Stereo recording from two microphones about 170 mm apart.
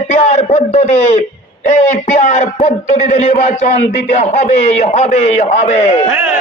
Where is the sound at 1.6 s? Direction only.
45° left (ahead or behind).